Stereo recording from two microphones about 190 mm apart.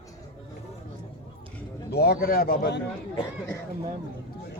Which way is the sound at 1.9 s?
55° left (ahead or behind).